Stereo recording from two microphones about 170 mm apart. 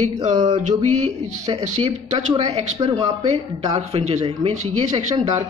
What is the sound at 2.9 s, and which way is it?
Speech, 40° right (ahead or behind).